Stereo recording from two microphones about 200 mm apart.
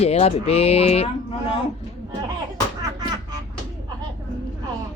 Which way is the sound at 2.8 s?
20° right (ahead or behind).